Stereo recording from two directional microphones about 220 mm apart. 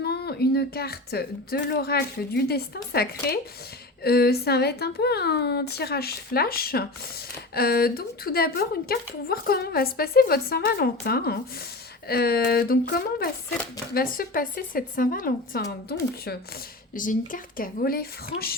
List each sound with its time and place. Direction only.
0.0 s a woman's voice: 45° left (ahead or behind)
16.9 s speech: 40° left (ahead or behind)
18.3 s speech: 25° left (ahead or behind)